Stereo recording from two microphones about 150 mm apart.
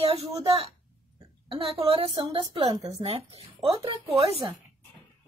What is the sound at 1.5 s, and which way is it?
A woman's voice, 35° right (ahead or behind).